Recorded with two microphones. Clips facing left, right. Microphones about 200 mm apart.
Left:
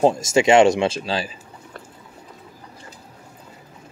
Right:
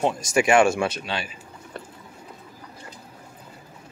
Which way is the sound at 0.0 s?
25° left (ahead or behind).